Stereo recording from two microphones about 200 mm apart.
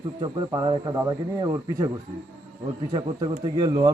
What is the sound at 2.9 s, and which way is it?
Speech, 20° right (ahead or behind).